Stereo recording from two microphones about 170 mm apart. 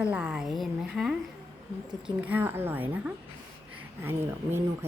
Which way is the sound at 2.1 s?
10° right (ahead or behind).